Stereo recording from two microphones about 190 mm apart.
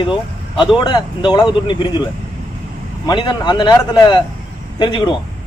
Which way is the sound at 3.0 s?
25° left (ahead or behind).